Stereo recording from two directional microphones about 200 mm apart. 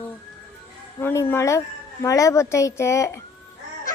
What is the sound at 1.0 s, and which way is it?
A child's voice, 10° left (ahead or behind).